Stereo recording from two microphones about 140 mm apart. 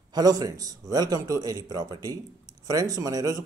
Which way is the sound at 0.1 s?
30° right (ahead or behind).